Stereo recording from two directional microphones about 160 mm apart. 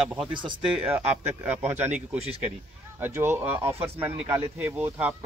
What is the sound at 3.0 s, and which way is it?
Speech, 15° right (ahead or behind).